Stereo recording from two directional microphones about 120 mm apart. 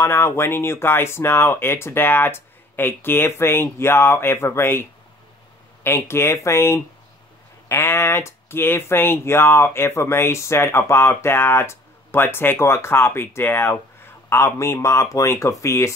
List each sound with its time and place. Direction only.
0.0 s speech: 20° left (ahead or behind)
5.9 s speech: 20° left (ahead or behind)